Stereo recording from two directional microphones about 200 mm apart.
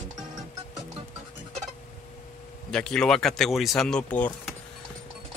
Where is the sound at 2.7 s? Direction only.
5° left (ahead or behind).